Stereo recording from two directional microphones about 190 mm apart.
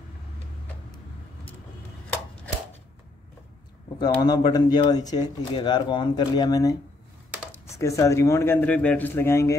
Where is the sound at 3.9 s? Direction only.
20° left (ahead or behind).